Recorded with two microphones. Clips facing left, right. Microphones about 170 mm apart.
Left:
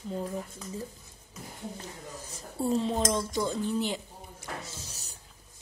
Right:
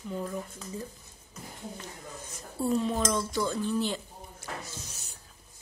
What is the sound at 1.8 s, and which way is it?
Dishes, 30° left (ahead or behind).